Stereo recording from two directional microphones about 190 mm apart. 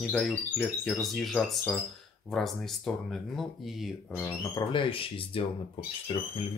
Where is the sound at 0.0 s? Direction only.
5° left (ahead or behind).